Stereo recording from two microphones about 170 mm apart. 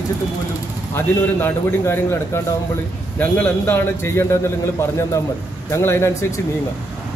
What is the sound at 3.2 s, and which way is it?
A man's voice, 10° left (ahead or behind).